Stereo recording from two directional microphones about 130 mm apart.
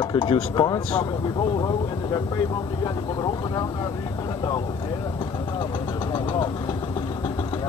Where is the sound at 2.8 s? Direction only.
30° left (ahead or behind).